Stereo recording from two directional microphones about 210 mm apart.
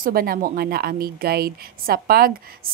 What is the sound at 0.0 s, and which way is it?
Speech, 45° right (ahead or behind).